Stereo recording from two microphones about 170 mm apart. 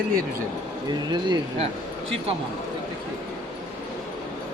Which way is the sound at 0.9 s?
25° right (ahead or behind).